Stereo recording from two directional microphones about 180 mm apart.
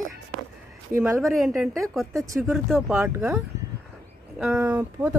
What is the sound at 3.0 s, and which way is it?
Speech, 15° right (ahead or behind).